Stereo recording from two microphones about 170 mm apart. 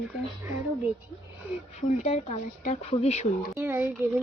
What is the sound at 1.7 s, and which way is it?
Speech, 45° left (ahead or behind).